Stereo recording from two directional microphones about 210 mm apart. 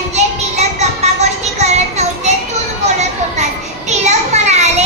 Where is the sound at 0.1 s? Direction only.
30° right (ahead or behind).